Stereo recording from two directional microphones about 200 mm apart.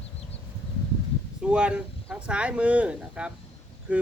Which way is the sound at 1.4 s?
5° right (ahead or behind).